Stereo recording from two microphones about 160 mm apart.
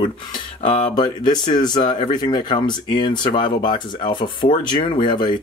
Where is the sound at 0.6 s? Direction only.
50° left (ahead or behind).